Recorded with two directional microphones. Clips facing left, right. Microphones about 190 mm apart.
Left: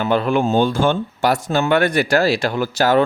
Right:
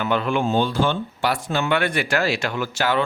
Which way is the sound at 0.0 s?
35° left (ahead or behind).